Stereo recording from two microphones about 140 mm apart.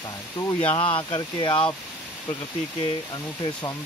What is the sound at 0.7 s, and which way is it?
Speech, 35° left (ahead or behind).